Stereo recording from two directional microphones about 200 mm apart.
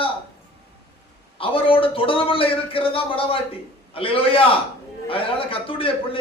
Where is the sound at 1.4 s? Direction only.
25° left (ahead or behind).